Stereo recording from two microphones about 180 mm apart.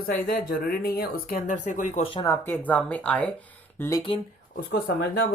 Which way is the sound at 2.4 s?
10° left (ahead or behind).